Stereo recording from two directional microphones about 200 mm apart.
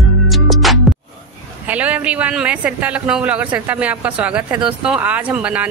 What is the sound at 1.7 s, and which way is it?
Speech, 5° right (ahead or behind).